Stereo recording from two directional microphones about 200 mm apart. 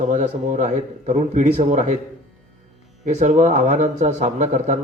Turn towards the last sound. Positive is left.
turn(degrees=-35)  # may be behind; listen again after turning